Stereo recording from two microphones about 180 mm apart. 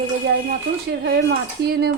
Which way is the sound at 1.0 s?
60° right (ahead or behind).